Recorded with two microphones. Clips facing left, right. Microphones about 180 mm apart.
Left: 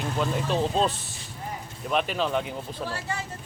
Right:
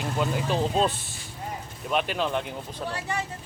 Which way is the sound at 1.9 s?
Centre (ahead or behind).